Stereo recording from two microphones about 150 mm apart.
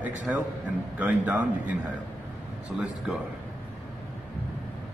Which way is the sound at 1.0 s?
10° right (ahead or behind).